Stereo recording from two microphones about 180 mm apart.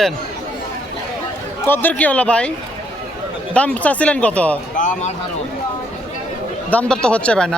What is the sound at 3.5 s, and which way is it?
Speech, 5° left (ahead or behind).